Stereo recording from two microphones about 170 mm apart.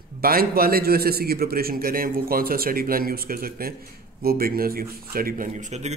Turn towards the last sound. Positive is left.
turn(degrees=-45)  # may be behind; listen again after turning